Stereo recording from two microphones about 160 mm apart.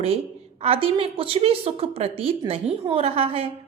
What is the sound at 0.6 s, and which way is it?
A woman's voice, 35° right (ahead or behind).